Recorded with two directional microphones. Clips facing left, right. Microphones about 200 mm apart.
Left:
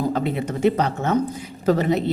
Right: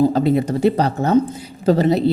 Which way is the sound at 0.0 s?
30° right (ahead or behind).